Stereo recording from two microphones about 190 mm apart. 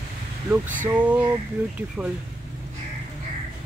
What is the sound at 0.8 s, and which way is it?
Speech, 5° right (ahead or behind).